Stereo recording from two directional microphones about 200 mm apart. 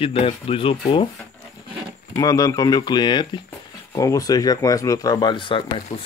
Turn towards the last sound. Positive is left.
turn(degrees=25)  # may be behind; listen again after turning